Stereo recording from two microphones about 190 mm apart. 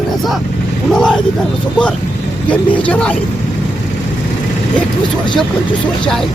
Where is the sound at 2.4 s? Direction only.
5° left (ahead or behind).